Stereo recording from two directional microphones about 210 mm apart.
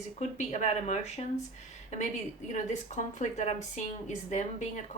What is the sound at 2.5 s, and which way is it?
Speech, 35° left (ahead or behind).